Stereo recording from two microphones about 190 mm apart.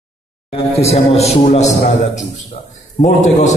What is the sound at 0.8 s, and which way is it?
Speech, 35° left (ahead or behind).